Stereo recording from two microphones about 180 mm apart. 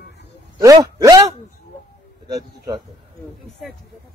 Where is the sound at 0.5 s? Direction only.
20° right (ahead or behind).